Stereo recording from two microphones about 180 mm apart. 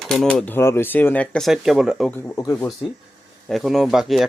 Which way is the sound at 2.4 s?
15° left (ahead or behind).